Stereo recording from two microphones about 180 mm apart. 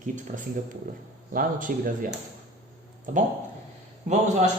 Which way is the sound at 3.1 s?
45° right (ahead or behind).